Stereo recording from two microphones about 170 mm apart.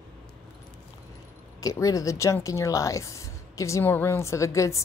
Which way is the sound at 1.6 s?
20° left (ahead or behind).